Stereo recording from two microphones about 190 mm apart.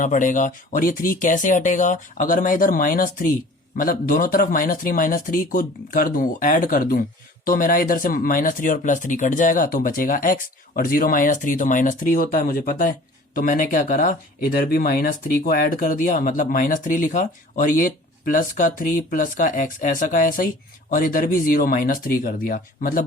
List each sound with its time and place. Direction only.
0.0 s speech: 40° left (ahead or behind)